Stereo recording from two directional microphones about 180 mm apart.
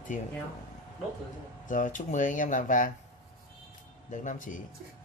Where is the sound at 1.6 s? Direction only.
45° left (ahead or behind).